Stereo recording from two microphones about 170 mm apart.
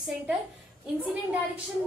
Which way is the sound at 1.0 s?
5° right (ahead or behind).